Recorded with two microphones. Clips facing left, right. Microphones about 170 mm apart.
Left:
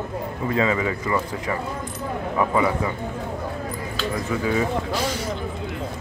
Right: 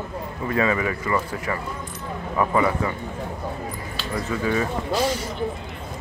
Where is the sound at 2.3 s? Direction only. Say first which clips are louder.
Right 1 dB; 15° left (ahead or behind).